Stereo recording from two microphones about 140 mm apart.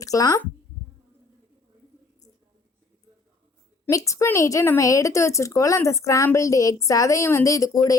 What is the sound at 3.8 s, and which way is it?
Speech, 20° left (ahead or behind).